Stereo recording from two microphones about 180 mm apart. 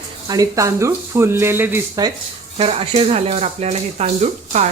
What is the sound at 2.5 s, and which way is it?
Speech, 35° right (ahead or behind).